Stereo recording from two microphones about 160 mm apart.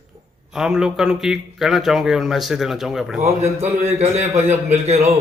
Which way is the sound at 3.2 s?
40° right (ahead or behind).